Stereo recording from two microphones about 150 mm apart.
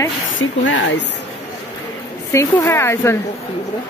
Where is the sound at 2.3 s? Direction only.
15° left (ahead or behind).